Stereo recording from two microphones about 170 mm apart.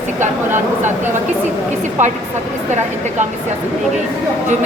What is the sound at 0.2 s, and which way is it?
Speech, 45° right (ahead or behind).